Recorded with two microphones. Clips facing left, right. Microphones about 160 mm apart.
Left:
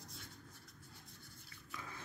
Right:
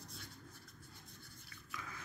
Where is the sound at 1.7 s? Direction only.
25° left (ahead or behind).